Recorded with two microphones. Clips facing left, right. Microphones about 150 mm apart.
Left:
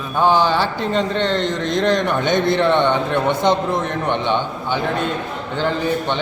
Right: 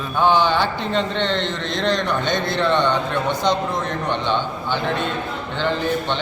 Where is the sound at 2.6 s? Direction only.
15° left (ahead or behind).